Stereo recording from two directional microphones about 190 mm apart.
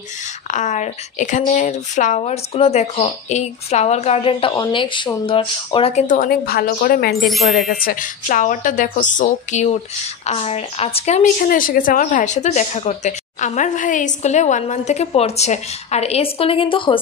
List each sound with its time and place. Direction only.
0.5 s a woman's voice: 40° left (ahead or behind)
7.2 s speech: centre (ahead or behind)
7.5 s a woman's voice: 50° left (ahead or behind)
11.4 s a woman's voice: 50° left (ahead or behind); by 17.0 s 25° left (ahead or behind)